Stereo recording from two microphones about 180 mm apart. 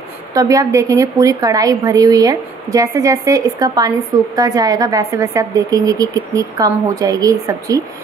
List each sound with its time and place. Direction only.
0.3 s a woman's voice: 20° right (ahead or behind)